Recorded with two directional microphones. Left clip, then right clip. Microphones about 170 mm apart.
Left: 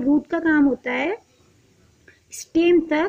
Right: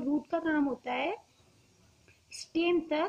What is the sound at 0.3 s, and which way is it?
Speech, 25° left (ahead or behind).